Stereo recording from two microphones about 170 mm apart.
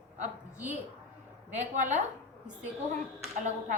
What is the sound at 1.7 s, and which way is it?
Speech, 45° right (ahead or behind).